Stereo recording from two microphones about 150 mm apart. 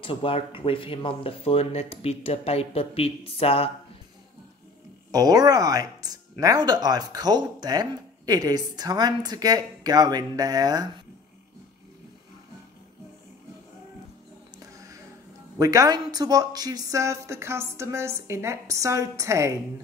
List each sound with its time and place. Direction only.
0.0 s speech: 35° left (ahead or behind)
5.1 s speech: 25° right (ahead or behind)
15.5 s speech: 25° right (ahead or behind)